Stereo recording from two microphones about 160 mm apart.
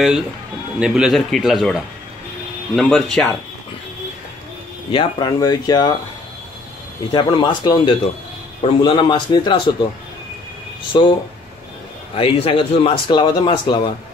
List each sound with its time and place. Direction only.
0.7 s speech: 5° right (ahead or behind)
4.9 s speech: 25° left (ahead or behind)
7.1 s a man's voice: 25° left (ahead or behind)
10.9 s a man's voice: 30° left (ahead or behind)
12.2 s a man's voice: 35° left (ahead or behind)